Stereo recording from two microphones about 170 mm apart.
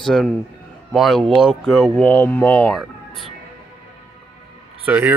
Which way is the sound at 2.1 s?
10° left (ahead or behind).